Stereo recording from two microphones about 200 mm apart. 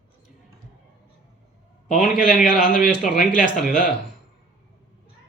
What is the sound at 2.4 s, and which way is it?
Speech, centre (ahead or behind).